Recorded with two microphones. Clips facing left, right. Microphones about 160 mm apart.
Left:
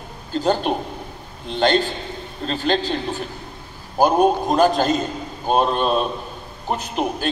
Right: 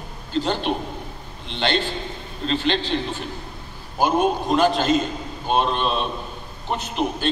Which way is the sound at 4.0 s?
40° left (ahead or behind).